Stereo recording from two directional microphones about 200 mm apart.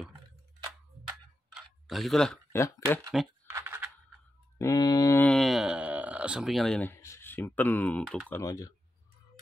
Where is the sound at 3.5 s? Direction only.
10° right (ahead or behind).